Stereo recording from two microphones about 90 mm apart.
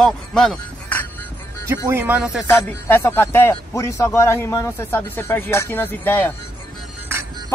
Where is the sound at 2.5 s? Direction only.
25° left (ahead or behind).